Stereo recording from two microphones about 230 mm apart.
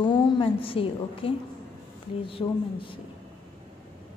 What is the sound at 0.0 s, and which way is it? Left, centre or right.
A woman's voice, left.